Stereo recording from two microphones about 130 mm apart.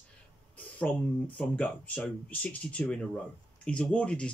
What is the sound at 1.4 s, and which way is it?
Speech, 10° left (ahead or behind).